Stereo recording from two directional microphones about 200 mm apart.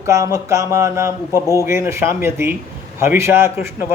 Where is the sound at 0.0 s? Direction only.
15° right (ahead or behind).